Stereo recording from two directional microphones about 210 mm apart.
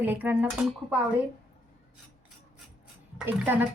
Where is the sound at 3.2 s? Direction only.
10° right (ahead or behind).